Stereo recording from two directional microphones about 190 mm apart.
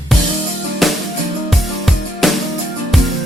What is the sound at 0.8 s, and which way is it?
Music, centre (ahead or behind).